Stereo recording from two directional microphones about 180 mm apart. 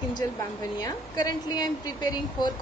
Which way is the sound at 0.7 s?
20° left (ahead or behind).